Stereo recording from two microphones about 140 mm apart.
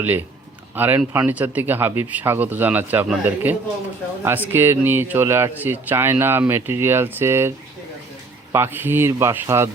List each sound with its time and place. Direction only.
0.8 s speech: 15° right (ahead or behind)
8.5 s speech: 15° right (ahead or behind)